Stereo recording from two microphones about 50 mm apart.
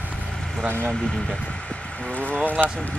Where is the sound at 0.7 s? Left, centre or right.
Right.